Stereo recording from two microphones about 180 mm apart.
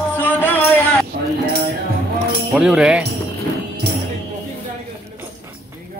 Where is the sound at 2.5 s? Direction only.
5° right (ahead or behind).